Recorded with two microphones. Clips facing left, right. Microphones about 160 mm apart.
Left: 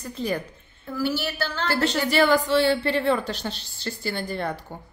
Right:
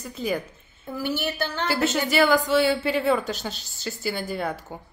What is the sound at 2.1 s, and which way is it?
A woman's voice, centre (ahead or behind).